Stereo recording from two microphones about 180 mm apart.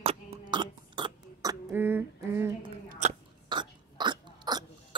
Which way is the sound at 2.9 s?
40° right (ahead or behind).